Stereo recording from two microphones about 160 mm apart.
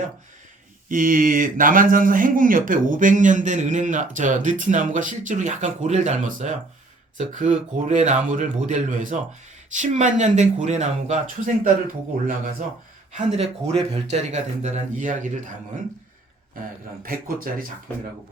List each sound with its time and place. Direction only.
0.9 s speech: 60° right (ahead or behind)
13.1 s speech: 40° right (ahead or behind)
17.0 s speech: 65° right (ahead or behind)